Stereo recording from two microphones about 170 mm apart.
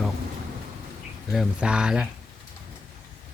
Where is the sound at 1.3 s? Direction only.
5° right (ahead or behind).